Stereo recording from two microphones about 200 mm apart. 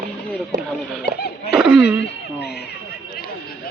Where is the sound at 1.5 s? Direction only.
5° right (ahead or behind).